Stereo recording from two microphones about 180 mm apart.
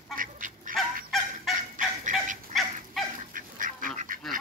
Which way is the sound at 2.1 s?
45° right (ahead or behind).